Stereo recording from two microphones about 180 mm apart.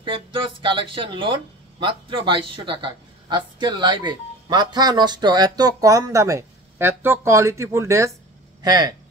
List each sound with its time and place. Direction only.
0.0 s speech: 30° right (ahead or behind)